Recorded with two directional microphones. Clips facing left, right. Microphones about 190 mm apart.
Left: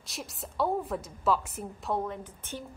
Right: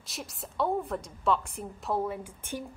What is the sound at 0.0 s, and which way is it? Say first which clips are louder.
A woman's voice: even; centre (ahead or behind).